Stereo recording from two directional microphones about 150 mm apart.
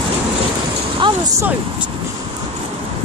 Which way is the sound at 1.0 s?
35° right (ahead or behind).